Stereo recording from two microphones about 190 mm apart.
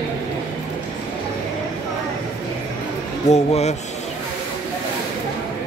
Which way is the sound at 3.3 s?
35° left (ahead or behind).